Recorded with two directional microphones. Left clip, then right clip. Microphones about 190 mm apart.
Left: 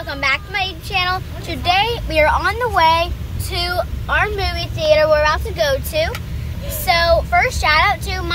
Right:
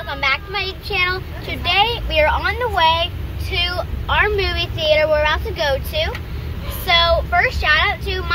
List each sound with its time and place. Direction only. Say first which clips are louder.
0.0 s speech: left 1 dB; 15° left (ahead or behind)